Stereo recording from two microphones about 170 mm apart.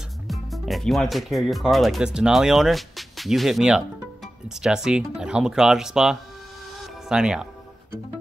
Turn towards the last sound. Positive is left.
turn(degrees=-5)  # may be behind; listen again after turning